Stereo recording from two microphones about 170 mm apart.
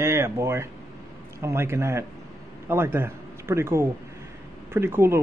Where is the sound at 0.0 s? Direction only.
15° right (ahead or behind).